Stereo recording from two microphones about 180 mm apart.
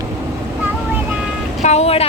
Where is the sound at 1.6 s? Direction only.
35° left (ahead or behind).